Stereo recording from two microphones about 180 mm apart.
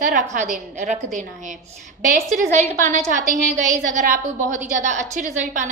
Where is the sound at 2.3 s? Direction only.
45° right (ahead or behind).